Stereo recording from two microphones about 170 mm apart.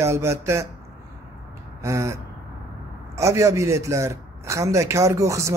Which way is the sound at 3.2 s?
20° right (ahead or behind).